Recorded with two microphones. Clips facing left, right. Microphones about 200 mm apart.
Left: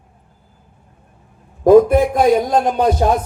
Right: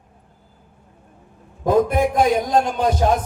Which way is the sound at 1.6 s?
50° left (ahead or behind).